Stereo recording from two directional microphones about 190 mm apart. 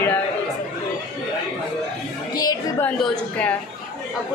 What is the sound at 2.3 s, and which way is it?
Music, 20° left (ahead or behind).